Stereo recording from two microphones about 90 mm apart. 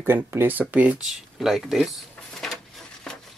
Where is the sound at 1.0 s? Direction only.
Centre (ahead or behind).